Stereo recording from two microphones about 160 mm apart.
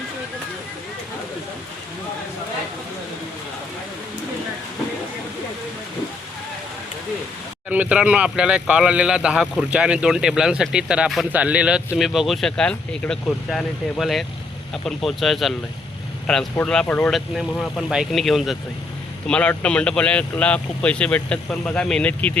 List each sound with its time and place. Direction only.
7.7 s a man's voice: 10° right (ahead or behind)